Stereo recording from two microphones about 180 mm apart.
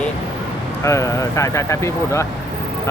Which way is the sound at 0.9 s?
15° left (ahead or behind).